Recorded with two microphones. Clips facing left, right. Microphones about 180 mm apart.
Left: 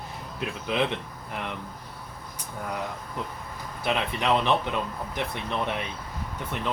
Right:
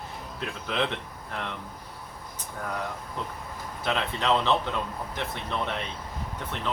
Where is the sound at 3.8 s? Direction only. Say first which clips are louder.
Left 1 dB; 15° left (ahead or behind).